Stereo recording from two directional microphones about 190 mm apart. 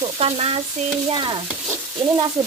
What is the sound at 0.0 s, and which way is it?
Stir, 30° right (ahead or behind).